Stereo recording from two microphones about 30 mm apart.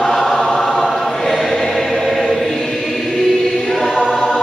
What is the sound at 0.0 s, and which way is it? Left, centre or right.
Choir, centre.